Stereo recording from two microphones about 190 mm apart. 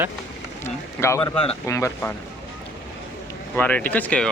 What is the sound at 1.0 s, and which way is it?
Speech, 15° left (ahead or behind).